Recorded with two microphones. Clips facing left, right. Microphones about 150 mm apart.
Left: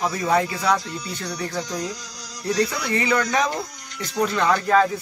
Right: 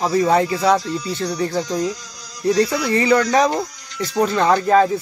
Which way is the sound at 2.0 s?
70° left (ahead or behind).